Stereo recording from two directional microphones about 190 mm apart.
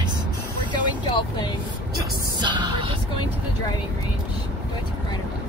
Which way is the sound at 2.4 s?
25° right (ahead or behind).